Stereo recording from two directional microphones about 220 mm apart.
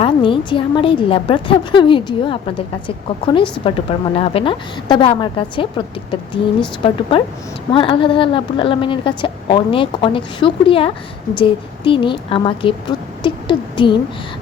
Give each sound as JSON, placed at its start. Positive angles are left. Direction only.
{"t": 0.0, "sound": "a woman's voice", "side_deg": 25}